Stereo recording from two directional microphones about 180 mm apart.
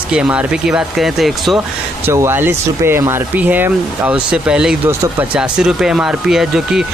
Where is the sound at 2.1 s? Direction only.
15° right (ahead or behind).